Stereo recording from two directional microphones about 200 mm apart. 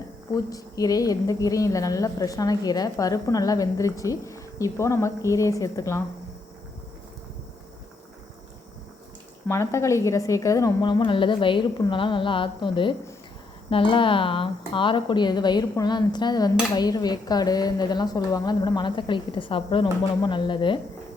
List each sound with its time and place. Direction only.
0.3 s a woman's voice: 15° left (ahead or behind)
9.5 s speech: 15° left (ahead or behind)